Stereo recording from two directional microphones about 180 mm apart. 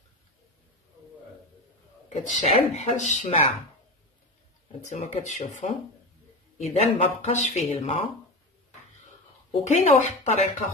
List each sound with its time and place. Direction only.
2.0 s speech: 40° left (ahead or behind)
4.8 s speech: 40° left (ahead or behind)
9.5 s speech: 40° left (ahead or behind)